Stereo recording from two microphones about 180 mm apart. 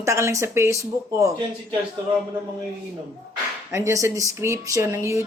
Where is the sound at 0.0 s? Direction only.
15° right (ahead or behind).